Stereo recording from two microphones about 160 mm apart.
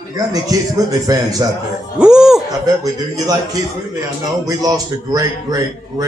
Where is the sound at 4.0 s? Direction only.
20° right (ahead or behind).